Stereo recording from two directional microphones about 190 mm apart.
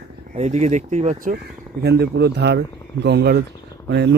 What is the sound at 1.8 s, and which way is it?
Speech, 60° right (ahead or behind).